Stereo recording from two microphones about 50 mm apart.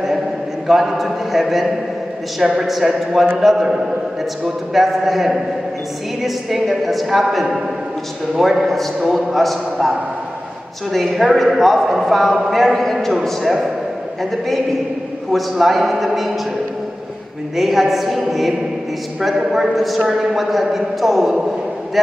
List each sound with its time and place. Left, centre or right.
0.7 s a man's voice: centre
15.3 s a man's voice: centre
17.6 s a man's voice: centre